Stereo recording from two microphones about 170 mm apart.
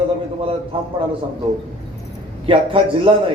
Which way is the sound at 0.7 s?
30° right (ahead or behind).